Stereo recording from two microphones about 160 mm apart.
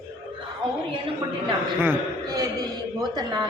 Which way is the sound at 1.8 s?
15° right (ahead or behind).